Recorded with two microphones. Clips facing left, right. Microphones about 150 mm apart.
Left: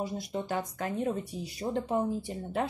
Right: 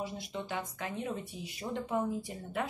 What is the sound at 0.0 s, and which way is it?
Speech, 40° left (ahead or behind).